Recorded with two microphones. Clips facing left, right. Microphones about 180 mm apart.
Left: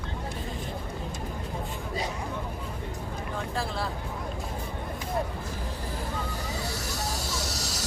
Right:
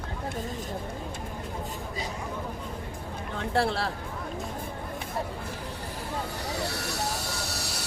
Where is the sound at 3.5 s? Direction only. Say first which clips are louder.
Right 7 dB; 70° right (ahead or behind).